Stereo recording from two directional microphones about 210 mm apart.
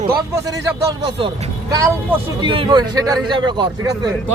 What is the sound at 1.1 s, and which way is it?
Speech, 25° right (ahead or behind).